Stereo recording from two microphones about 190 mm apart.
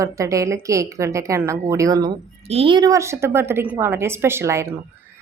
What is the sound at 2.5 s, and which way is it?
A woman's voice, 30° right (ahead or behind).